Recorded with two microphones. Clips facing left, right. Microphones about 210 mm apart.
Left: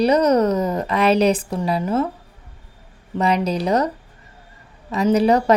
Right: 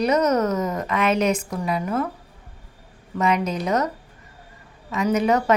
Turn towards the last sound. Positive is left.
turn(degrees=35)  # may be behind; listen again after turning